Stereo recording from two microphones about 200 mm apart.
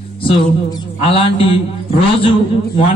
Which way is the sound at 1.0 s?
30° left (ahead or behind).